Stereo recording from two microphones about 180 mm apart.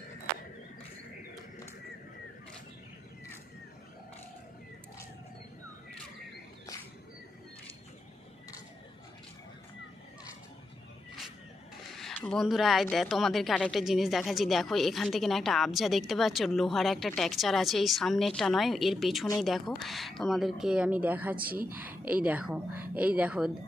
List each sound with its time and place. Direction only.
12.0 s a sound: 5° left (ahead or behind)
12.9 s speech: centre (ahead or behind)
21.4 s a woman's voice: 55° right (ahead or behind)
21.7 s a woman's voice: 10° right (ahead or behind)